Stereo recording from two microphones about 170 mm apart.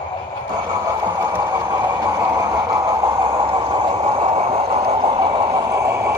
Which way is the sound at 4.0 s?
35° right (ahead or behind).